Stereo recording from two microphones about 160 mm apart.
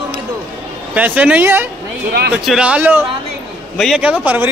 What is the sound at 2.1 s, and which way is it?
Speech, 75° right (ahead or behind).